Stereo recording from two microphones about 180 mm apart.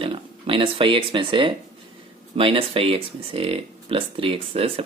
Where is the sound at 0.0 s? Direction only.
30° right (ahead or behind).